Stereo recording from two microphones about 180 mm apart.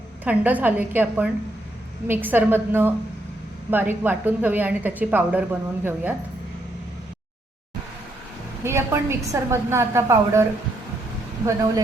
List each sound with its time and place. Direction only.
0.3 s a woman's voice: 10° right (ahead or behind)
8.6 s a woman's voice: 15° right (ahead or behind)